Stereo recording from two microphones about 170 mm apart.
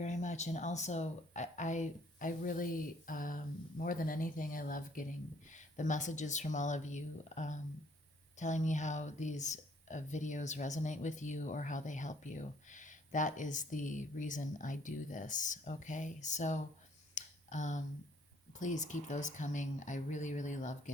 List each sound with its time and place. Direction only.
0.0 s speech: 45° left (ahead or behind)
17.2 s a sound: 45° left (ahead or behind)
18.6 s speech: 45° left (ahead or behind)